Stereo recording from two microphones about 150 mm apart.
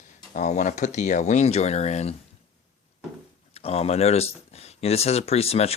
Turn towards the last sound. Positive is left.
turn(degrees=45)  # may be behind; listen again after turning